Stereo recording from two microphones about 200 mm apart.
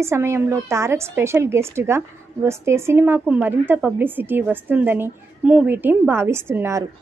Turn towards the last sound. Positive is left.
turn(degrees=-15)  # may be behind; listen again after turning